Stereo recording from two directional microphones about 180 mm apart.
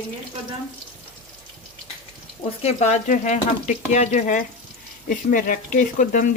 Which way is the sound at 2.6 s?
40° left (ahead or behind).